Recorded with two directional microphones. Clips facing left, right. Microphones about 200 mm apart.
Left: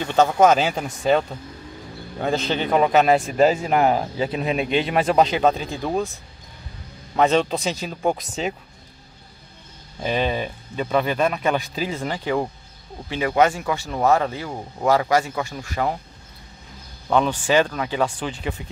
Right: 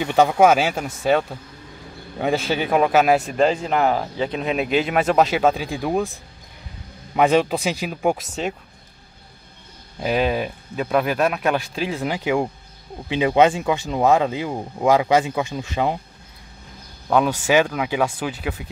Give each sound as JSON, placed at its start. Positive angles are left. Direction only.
{"t": 0.0, "sound": "a man's voice", "side_deg": -15}
{"t": 7.2, "sound": "speech", "side_deg": -10}
{"t": 8.3, "sound": "a man's voice", "side_deg": 0}
{"t": 9.9, "sound": "a man's voice", "side_deg": -5}
{"t": 17.1, "sound": "speech", "side_deg": -10}